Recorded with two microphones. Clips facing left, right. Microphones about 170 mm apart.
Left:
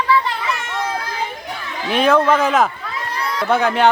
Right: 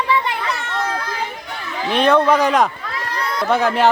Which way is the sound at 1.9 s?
5° left (ahead or behind).